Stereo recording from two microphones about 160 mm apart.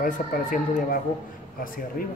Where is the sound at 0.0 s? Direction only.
55° left (ahead or behind).